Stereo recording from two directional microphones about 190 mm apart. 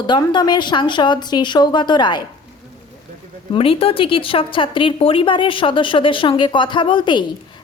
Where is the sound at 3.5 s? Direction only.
30° left (ahead or behind).